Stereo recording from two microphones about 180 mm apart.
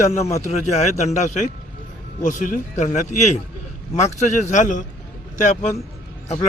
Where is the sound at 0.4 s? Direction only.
40° left (ahead or behind).